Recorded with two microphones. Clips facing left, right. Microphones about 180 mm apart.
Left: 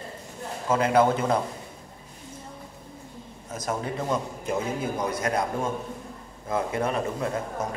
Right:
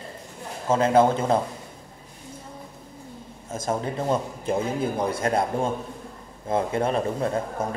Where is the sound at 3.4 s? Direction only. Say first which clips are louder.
Right 3 dB; 25° right (ahead or behind).